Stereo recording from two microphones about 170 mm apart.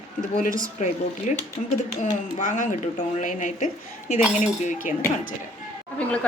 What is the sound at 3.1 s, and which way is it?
A woman's voice, 45° left (ahead or behind).